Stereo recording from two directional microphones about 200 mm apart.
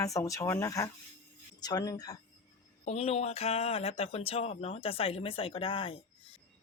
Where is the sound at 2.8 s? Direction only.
30° left (ahead or behind).